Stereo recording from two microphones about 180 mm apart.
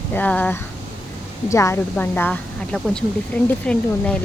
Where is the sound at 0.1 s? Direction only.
10° left (ahead or behind).